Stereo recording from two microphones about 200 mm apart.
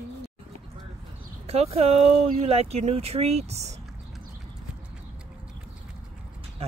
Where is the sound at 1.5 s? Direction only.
30° right (ahead or behind).